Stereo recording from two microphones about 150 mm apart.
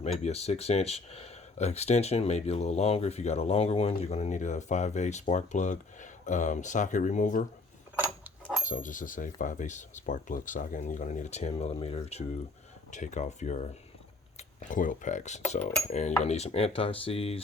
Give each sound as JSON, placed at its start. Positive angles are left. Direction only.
{"t": 0.0, "sound": "speech", "side_deg": 45}
{"t": 8.6, "sound": "speech", "side_deg": 60}